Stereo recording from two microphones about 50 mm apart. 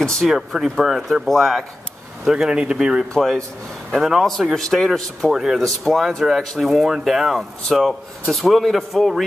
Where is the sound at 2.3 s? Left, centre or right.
Centre.